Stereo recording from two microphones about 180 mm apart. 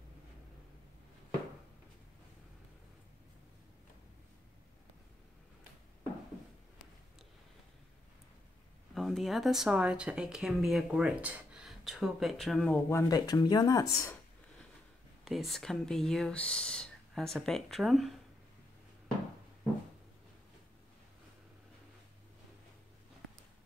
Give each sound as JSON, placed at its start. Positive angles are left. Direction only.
{"t": 8.9, "sound": "speech", "side_deg": 0}
{"t": 12.9, "sound": "speech", "side_deg": 20}
{"t": 15.2, "sound": "speech", "side_deg": 0}